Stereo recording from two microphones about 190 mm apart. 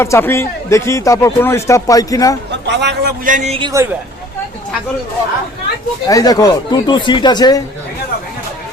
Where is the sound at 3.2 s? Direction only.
45° right (ahead or behind).